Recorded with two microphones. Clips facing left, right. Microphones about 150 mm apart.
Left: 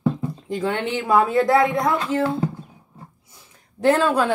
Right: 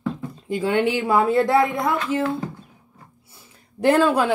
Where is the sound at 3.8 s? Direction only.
10° right (ahead or behind).